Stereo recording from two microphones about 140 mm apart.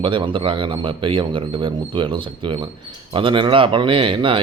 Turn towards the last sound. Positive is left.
turn(degrees=-40)  # may be behind; listen again after turning